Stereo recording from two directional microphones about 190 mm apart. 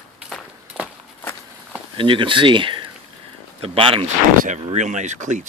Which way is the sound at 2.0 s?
25° right (ahead or behind).